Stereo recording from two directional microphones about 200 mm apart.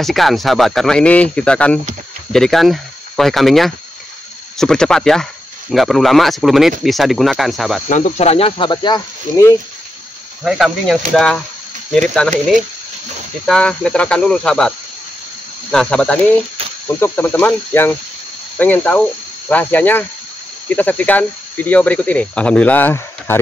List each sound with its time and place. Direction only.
0.0 s speech: centre (ahead or behind)
7.9 s speech: 35° left (ahead or behind); by 9.6 s 20° left (ahead or behind)
10.4 s speech: centre (ahead or behind)
15.7 s speech: 5° left (ahead or behind)